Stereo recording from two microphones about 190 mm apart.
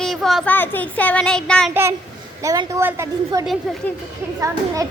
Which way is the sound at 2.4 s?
15° right (ahead or behind).